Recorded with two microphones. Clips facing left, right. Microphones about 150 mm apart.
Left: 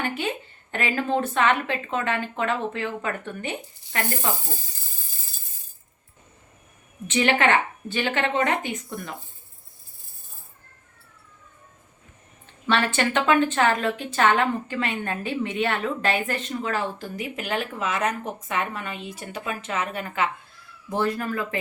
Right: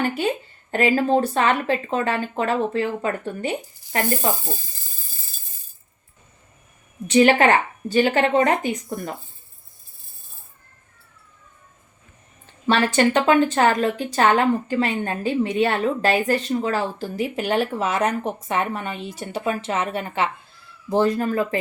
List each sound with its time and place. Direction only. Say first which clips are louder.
0.0 s a woman's voice: right 5 dB; 40° right (ahead or behind)
7.1 s a woman's voice: right 6 dB; 35° right (ahead or behind)
12.6 s a woman's voice: right 5 dB; 35° right (ahead or behind)